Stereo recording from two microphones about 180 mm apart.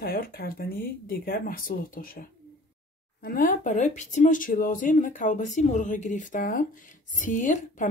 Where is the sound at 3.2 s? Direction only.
50° left (ahead or behind).